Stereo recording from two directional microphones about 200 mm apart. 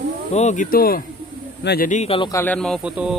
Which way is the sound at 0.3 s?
35° left (ahead or behind).